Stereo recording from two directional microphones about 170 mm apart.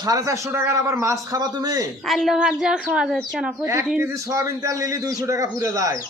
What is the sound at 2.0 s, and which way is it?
A woman's voice, centre (ahead or behind).